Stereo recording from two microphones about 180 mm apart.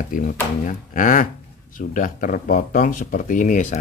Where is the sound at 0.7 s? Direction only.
50° left (ahead or behind).